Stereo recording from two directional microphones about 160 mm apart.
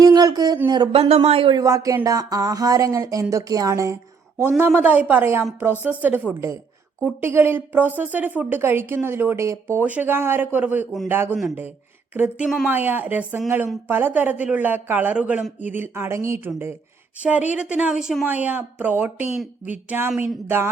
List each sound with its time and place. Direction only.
0.0 s speech: 25° right (ahead or behind)
1.5 s a woman's voice: 20° right (ahead or behind)